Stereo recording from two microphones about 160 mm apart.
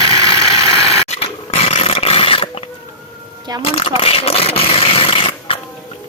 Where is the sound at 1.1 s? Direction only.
40° left (ahead or behind).